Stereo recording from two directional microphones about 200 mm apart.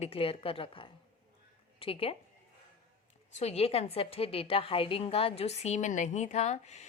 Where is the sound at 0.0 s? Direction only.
30° left (ahead or behind).